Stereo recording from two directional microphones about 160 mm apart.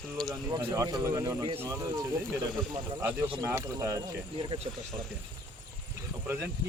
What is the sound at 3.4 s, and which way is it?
Speech, 15° right (ahead or behind).